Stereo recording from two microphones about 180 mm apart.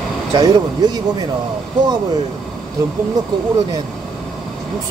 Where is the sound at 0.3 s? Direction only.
20° right (ahead or behind).